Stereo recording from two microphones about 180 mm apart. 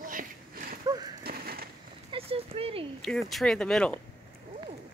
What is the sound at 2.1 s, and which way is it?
Speech, 30° right (ahead or behind).